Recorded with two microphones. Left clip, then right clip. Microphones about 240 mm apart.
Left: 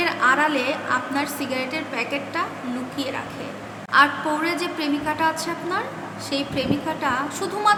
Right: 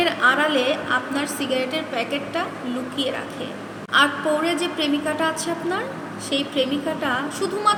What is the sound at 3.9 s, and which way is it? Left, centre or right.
A woman's voice, centre.